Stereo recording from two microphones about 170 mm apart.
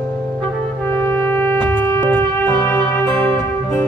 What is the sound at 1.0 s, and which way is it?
Music, 15° left (ahead or behind).